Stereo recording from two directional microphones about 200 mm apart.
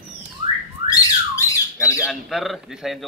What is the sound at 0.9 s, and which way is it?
Squawk, 15° left (ahead or behind).